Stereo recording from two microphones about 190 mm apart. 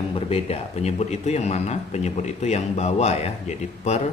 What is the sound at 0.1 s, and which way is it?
Speech, 30° left (ahead or behind).